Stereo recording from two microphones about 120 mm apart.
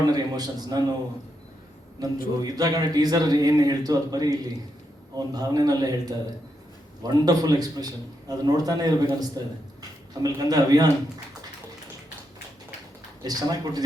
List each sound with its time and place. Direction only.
0.0 s a man's voice: 35° right (ahead or behind)
2.0 s a man's voice: 30° right (ahead or behind)
13.2 s a man's voice: 35° right (ahead or behind)